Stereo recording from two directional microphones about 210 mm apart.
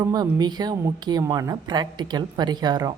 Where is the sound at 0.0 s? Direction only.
15° right (ahead or behind).